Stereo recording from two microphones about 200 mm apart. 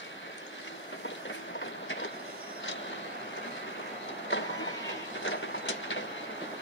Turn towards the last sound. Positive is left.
turn(degrees=70)  # may be behind; listen again after turning